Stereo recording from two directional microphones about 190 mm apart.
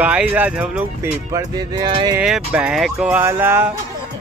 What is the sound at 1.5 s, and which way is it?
Music, 20° right (ahead or behind).